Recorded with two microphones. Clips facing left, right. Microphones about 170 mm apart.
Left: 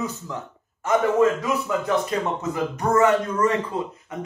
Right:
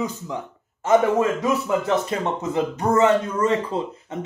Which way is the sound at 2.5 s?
25° right (ahead or behind).